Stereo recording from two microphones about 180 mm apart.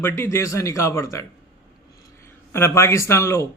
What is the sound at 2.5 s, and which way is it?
A man's voice, 15° left (ahead or behind).